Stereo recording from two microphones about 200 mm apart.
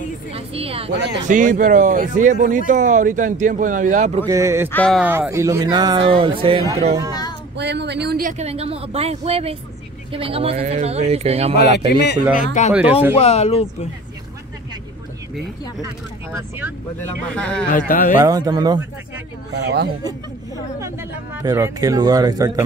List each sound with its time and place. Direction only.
0.3 s speech: 30° right (ahead or behind)
0.9 s speech: 60° right (ahead or behind)
1.2 s speech: 40° right (ahead or behind)
4.3 s speech: 15° right (ahead or behind)
4.6 s speech: 10° left (ahead or behind)
4.9 s speech: 5° right (ahead or behind); by 6.7 s 25° right (ahead or behind)
7.5 s speech: 60° right (ahead or behind); by 11.5 s 30° right (ahead or behind)
11.5 s a man's voice: 60° left (ahead or behind)
12.6 s speech: 35° left (ahead or behind)
17.0 s speech: 5° left (ahead or behind)
17.6 s speech: 45° left (ahead or behind)
18.2 s speech: 20° right (ahead or behind)
19.5 s speech: 55° right (ahead or behind)
21.4 s speech: 10° right (ahead or behind)